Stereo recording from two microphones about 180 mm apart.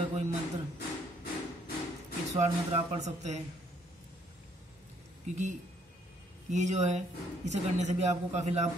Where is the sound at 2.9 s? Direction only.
40° right (ahead or behind).